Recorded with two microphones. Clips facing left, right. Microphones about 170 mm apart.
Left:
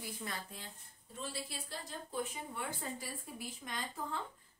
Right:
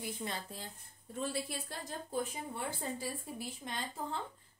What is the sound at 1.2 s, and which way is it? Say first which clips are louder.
Speech: right 6 dB; 50° right (ahead or behind).